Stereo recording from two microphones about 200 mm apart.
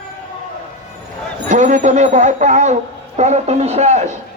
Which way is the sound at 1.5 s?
35° right (ahead or behind).